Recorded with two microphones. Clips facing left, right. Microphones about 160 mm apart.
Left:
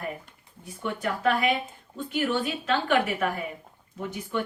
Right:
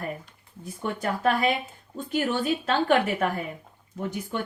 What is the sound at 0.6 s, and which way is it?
Speech, 40° right (ahead or behind).